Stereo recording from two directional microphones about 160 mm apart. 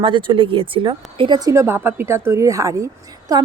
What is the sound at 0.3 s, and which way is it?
Speech, 35° right (ahead or behind).